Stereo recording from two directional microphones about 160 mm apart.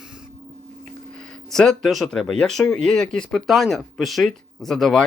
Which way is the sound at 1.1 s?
5° left (ahead or behind).